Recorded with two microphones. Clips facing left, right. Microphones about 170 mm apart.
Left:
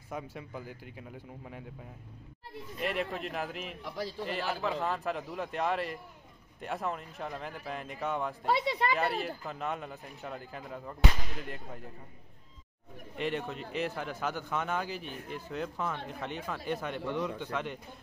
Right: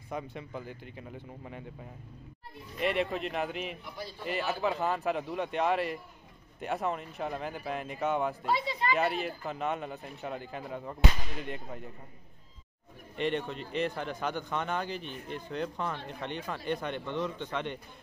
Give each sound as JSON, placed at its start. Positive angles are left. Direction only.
{"t": 0.1, "sound": "speech", "side_deg": 5}
{"t": 2.8, "sound": "a man's voice", "side_deg": 0}
{"t": 3.8, "sound": "a man's voice", "side_deg": 90}
{"t": 4.3, "sound": "a man's voice", "side_deg": -5}
{"t": 8.5, "sound": "speech", "side_deg": 70}
{"t": 8.9, "sound": "a man's voice", "side_deg": 0}
{"t": 13.2, "sound": "a man's voice", "side_deg": 5}